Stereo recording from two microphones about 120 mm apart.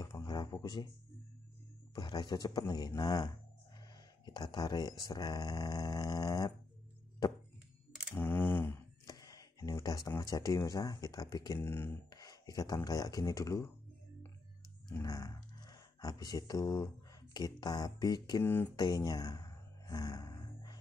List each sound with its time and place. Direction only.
0.0 s a sound: 35° left (ahead or behind)
2.0 s speech: 40° left (ahead or behind)
4.3 s speech: 35° left (ahead or behind)
8.1 s camera: 15° left (ahead or behind)
9.0 s speech: 30° left (ahead or behind)
11.6 s speech: 20° left (ahead or behind)
12.1 s speech: 30° left (ahead or behind)
15.0 s speech: 30° left (ahead or behind)
18.4 s speech: 15° left (ahead or behind)
18.8 s a sound: 35° left (ahead or behind)